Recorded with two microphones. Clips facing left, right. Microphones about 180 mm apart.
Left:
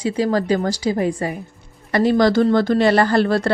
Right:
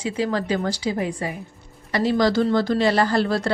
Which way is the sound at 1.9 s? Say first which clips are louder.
Left 4 dB; 55° left (ahead or behind).